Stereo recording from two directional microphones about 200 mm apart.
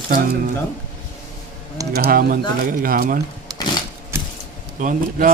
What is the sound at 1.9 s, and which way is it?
Speech, 50° right (ahead or behind).